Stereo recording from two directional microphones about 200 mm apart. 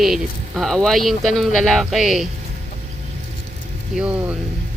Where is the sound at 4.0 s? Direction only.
5° right (ahead or behind).